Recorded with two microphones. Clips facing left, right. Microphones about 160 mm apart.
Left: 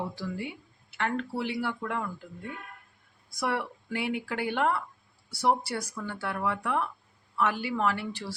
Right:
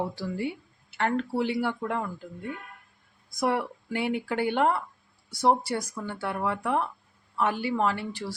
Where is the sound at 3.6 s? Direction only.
35° right (ahead or behind).